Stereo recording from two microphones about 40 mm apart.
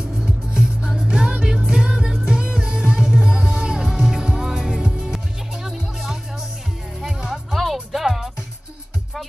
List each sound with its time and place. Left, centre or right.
0.2 s music: centre
4.8 s music: right
5.1 s music: centre
7.5 s music: centre